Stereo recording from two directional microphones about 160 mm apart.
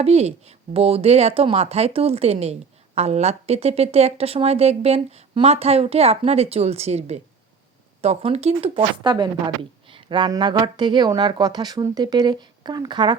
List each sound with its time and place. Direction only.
0.0 s speech: 40° right (ahead or behind)